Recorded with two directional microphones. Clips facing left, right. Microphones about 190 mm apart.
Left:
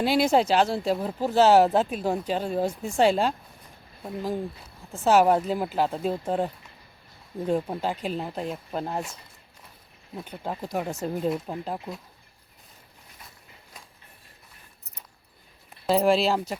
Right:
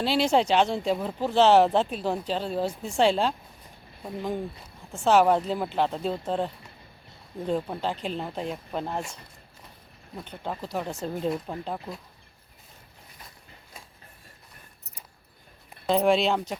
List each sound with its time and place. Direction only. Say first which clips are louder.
0.0 s speech: left 2 dB; 10° left (ahead or behind)
10.2 s speech: left 1 dB; 5° left (ahead or behind)
15.9 s speech: left 1 dB; centre (ahead or behind)